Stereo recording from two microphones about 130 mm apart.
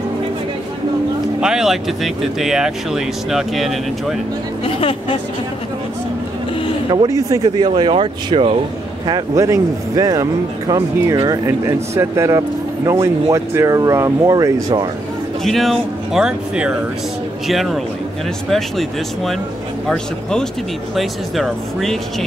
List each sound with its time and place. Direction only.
1.4 s speech: 5° right (ahead or behind)
4.6 s speech: 45° left (ahead or behind)
6.9 s speech: 30° right (ahead or behind)
9.0 s speech: 30° right (ahead or behind)
15.4 s speech: centre (ahead or behind)